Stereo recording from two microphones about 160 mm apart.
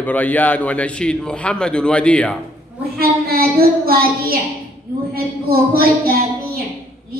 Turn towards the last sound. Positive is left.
turn(degrees=-70)  # may be behind; listen again after turning